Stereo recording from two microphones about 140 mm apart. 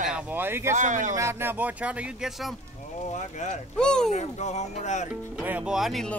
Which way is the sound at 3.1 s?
60° left (ahead or behind).